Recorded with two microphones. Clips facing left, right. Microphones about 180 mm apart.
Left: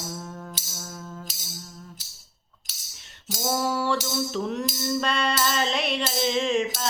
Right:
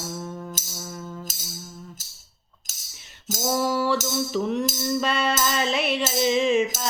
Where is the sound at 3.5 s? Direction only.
Centre (ahead or behind).